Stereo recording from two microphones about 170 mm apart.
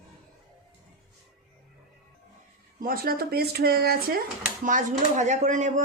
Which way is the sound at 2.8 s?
60° right (ahead or behind).